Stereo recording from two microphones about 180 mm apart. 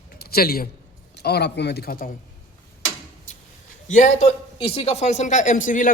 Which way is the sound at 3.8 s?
45° left (ahead or behind).